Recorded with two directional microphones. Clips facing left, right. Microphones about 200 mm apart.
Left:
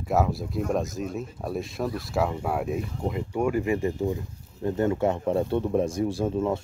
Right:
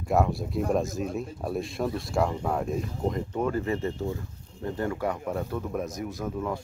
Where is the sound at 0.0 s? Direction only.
Centre (ahead or behind).